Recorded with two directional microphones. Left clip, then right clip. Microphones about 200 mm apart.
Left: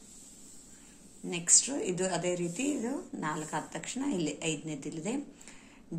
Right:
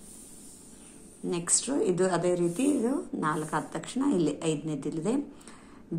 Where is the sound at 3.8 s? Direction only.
Centre (ahead or behind).